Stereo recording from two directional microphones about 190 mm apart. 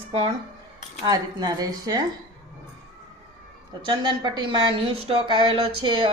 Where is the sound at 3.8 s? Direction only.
25° right (ahead or behind).